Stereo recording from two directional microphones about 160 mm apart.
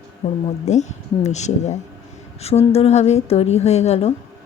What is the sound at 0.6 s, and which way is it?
A woman's voice, 45° left (ahead or behind).